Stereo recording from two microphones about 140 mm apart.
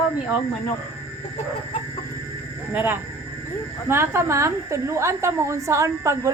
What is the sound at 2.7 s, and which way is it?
A woman's voice, 15° right (ahead or behind).